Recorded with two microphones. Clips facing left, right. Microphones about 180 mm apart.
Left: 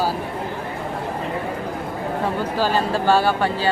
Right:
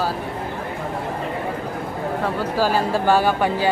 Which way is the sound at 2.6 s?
10° right (ahead or behind).